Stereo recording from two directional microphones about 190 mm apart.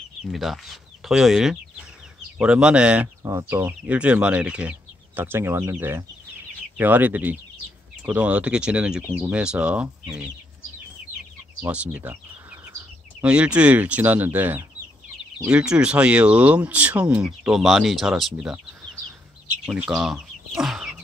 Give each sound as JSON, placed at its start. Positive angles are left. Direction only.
{"t": 0.3, "sound": "speech", "side_deg": 0}
{"t": 11.6, "sound": "speech", "side_deg": -5}
{"t": 13.2, "sound": "speech", "side_deg": -5}
{"t": 19.6, "sound": "speech", "side_deg": 0}